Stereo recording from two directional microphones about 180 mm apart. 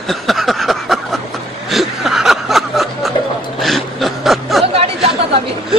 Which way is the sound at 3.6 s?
Centre (ahead or behind).